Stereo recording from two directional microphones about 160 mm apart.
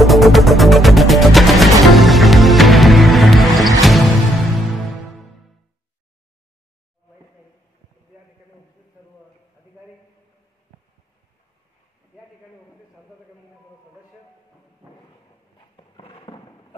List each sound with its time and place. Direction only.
0.0 s music: centre (ahead or behind)
15.7 s horse: 35° left (ahead or behind)